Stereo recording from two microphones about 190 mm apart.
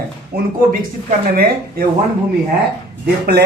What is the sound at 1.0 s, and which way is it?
Speech, 50° right (ahead or behind).